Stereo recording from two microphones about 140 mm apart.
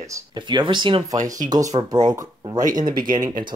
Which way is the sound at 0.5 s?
35° right (ahead or behind).